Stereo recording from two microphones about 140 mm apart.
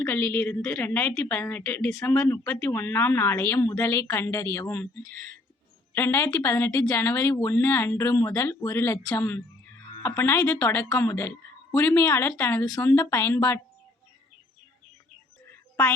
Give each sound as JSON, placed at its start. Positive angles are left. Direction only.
{"t": 0.0, "sound": "speech", "side_deg": 10}
{"t": 5.9, "sound": "speech", "side_deg": 15}